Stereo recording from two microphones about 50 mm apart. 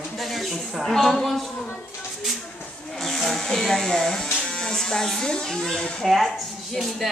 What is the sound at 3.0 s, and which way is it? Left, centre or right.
Speech, centre.